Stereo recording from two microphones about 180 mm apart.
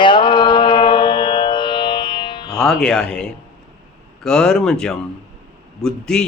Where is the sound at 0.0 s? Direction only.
25° left (ahead or behind).